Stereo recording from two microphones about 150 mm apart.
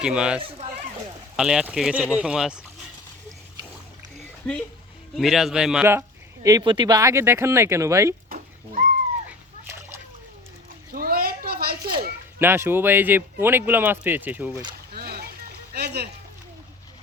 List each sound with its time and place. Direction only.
0.0 s a man's voice: 5° right (ahead or behind)
4.4 s speech: 10° left (ahead or behind)
5.1 s a man's voice: centre (ahead or behind); by 8.1 s 20° right (ahead or behind)
9.6 s splash: 15° right (ahead or behind)
10.9 s children playing: 75° right (ahead or behind)
12.4 s a man's voice: 15° right (ahead or behind)
14.9 s boat: 90° right
15.7 s a sound: 90° right